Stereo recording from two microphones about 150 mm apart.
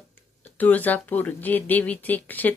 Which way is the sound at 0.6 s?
10° left (ahead or behind).